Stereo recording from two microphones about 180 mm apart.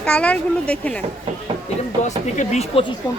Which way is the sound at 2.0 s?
40° left (ahead or behind).